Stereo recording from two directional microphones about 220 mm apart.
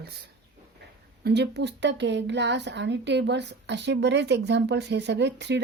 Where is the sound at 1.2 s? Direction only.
50° right (ahead or behind).